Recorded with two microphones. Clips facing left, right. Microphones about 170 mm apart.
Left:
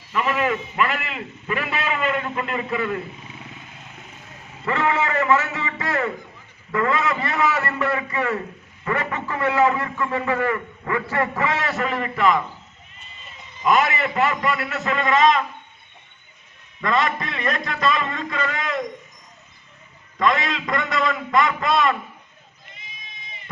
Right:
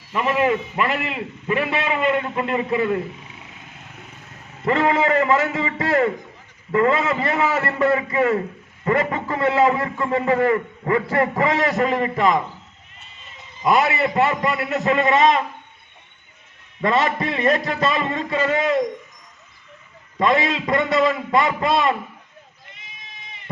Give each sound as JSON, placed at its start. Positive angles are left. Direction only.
{"t": 0.1, "sound": "a man's voice", "side_deg": -25}
{"t": 4.6, "sound": "a man's voice", "side_deg": -35}
{"t": 13.6, "sound": "a man's voice", "side_deg": -35}
{"t": 14.3, "sound": "a man's voice", "side_deg": -20}
{"t": 14.8, "sound": "a man's voice", "side_deg": -35}
{"t": 16.8, "sound": "a man's voice", "side_deg": -30}
{"t": 20.1, "sound": "a man's voice", "side_deg": -30}